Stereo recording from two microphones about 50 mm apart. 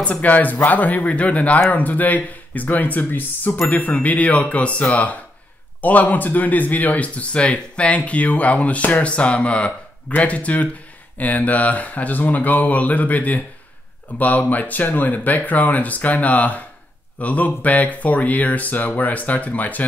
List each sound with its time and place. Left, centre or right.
0.0 s speech: left